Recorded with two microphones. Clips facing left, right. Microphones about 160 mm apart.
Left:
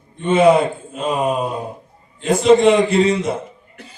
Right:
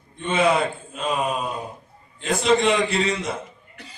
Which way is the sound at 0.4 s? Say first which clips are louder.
Left 8 dB; 45° left (ahead or behind).